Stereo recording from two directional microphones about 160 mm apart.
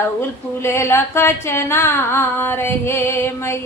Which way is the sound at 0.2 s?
15° left (ahead or behind).